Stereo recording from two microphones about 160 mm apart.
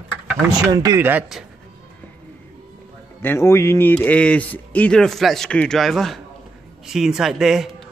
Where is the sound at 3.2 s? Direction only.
15° left (ahead or behind).